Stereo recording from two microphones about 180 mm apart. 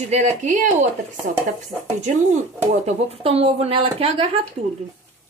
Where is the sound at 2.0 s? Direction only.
40° right (ahead or behind).